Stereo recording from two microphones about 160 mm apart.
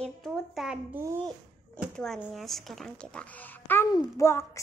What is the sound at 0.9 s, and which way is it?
Speech, 15° right (ahead or behind).